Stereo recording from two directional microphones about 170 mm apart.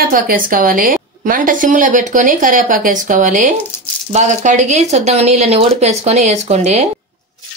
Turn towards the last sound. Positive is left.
turn(degrees=-40)  # may be behind; listen again after turning